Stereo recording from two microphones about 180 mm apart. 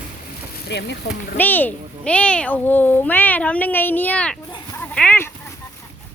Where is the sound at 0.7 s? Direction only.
70° left (ahead or behind).